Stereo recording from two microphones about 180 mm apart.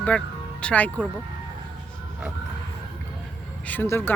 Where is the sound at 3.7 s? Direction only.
10° left (ahead or behind).